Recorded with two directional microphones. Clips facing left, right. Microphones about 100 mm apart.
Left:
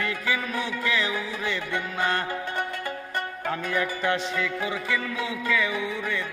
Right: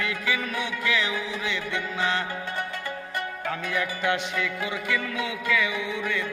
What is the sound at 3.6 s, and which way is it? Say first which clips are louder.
Music: left 1 dB; 35° left (ahead or behind).